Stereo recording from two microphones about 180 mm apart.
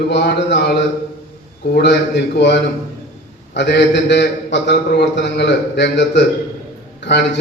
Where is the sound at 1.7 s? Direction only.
70° left (ahead or behind).